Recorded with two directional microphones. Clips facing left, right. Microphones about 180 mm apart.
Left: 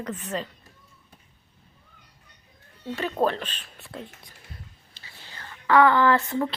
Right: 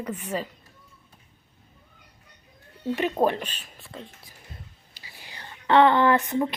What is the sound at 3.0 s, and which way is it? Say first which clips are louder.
Speech: right 1 dB; 15° right (ahead or behind).